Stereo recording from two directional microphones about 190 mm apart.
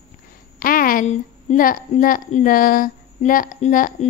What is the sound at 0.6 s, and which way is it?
A woman's voice, 50° left (ahead or behind).